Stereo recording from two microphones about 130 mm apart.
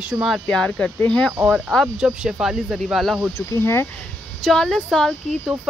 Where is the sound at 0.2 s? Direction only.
5° left (ahead or behind).